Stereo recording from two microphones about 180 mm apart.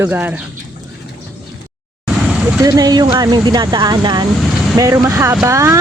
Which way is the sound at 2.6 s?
20° right (ahead or behind).